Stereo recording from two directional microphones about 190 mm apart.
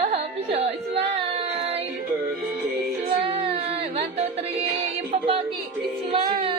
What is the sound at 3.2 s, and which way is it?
Music, 30° right (ahead or behind).